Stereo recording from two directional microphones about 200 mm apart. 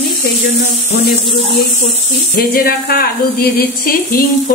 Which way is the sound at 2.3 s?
50° left (ahead or behind).